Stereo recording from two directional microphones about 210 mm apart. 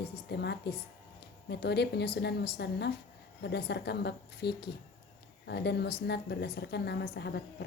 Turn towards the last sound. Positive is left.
turn(degrees=50)  # may be behind; listen again after turning